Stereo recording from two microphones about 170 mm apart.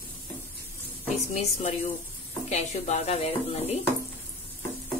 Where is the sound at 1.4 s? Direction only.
40° left (ahead or behind).